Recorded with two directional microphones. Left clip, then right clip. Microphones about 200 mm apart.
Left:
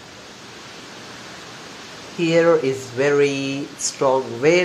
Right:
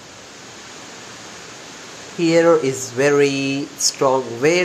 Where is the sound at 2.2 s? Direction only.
20° right (ahead or behind).